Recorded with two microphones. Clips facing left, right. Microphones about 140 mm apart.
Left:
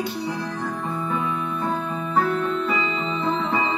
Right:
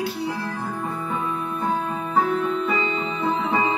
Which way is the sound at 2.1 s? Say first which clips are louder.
Even; 5° right (ahead or behind).